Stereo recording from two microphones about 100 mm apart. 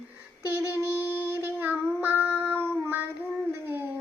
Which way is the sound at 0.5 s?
30° right (ahead or behind).